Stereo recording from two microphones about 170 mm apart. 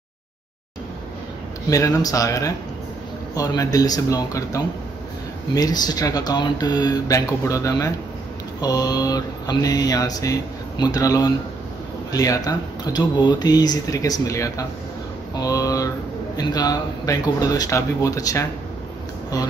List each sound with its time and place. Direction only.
1.7 s mantra: 20° left (ahead or behind)
15.3 s a sound: 20° left (ahead or behind)
16.3 s mantra: 25° left (ahead or behind)